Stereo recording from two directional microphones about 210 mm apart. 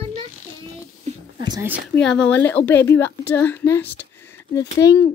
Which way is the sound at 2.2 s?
5° left (ahead or behind).